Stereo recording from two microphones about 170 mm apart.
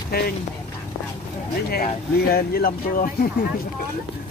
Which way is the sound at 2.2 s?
65° left (ahead or behind).